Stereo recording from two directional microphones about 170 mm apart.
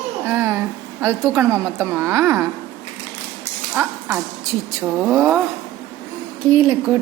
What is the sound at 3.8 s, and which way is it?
A woman's voice, 10° right (ahead or behind).